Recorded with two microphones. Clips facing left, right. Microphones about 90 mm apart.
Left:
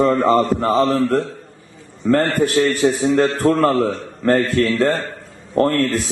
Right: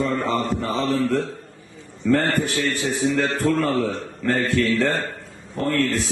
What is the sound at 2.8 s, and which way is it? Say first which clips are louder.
A man's voice: left 6 dB; 45° left (ahead or behind).